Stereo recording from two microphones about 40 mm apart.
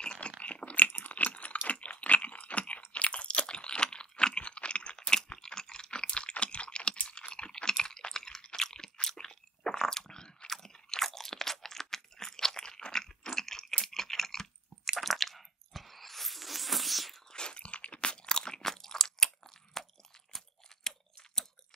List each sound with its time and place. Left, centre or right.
0.0 s chewing: left
0.4 s crunch: left
0.9 s chewing: left
1.7 s crunch: left
5.1 s a sound: centre
9.2 s chewing: centre
10.5 s crunch: centre
14.9 s squish: centre
17.3 s crunch: left
18.1 s crunch: left
18.6 s crunch: centre
20.9 s chewing: centre